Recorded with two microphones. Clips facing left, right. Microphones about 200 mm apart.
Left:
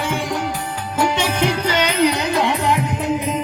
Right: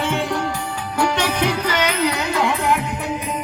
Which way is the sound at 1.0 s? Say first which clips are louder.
Left 1 dB; 25° left (ahead or behind).